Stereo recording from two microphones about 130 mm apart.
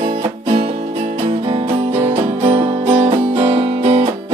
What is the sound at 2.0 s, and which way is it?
Music, 45° right (ahead or behind).